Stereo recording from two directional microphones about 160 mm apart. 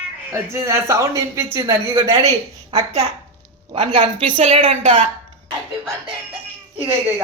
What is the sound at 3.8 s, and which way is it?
A woman's voice, 40° right (ahead or behind).